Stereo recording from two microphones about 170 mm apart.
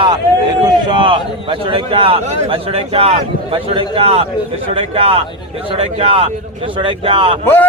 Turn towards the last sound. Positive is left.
turn(degrees=-30)  # may be behind; listen again after turning